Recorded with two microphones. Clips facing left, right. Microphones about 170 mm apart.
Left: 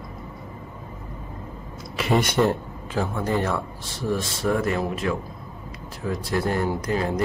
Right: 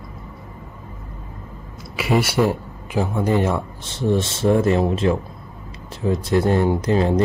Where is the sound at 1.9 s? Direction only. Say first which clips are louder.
Right 2 dB; 5° right (ahead or behind).